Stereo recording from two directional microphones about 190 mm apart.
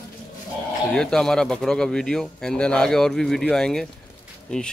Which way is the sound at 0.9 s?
5° left (ahead or behind).